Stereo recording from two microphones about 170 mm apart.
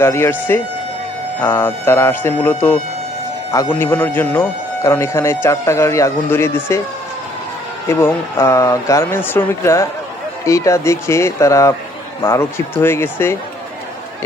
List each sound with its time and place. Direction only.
0.0 s speech: 15° left (ahead or behind)
7.9 s speech: 15° left (ahead or behind)